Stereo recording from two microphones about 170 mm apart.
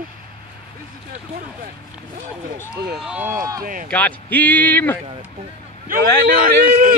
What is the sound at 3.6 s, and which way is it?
Speech, 55° right (ahead or behind).